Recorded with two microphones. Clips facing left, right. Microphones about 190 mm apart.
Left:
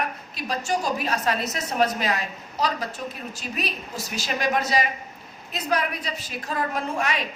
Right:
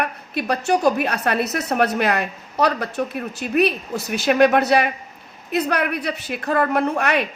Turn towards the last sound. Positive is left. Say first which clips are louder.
# right 7 dB
turn(degrees=-65)  # may be behind; listen again after turning